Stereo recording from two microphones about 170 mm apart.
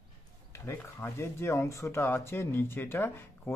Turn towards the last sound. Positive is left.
turn(degrees=10)  # may be behind; listen again after turning